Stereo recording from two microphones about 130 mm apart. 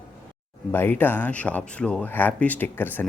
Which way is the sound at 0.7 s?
15° left (ahead or behind).